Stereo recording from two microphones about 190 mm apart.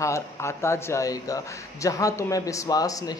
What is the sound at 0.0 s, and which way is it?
A man's voice, 15° left (ahead or behind).